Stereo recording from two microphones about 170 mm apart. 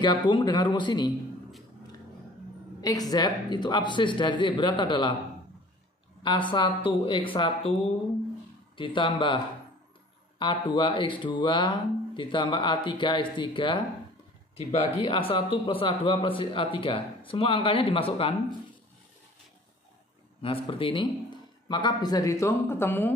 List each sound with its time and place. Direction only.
0.0 s speech: 25° left (ahead or behind)
2.8 s speech: 20° left (ahead or behind)
6.2 s speech: 25° left (ahead or behind)
8.7 s speech: 30° left (ahead or behind)
10.4 s speech: 30° left (ahead or behind)
15.0 s speech: 30° left (ahead or behind)
20.4 s speech: 30° left (ahead or behind); by 23.1 s 10° left (ahead or behind)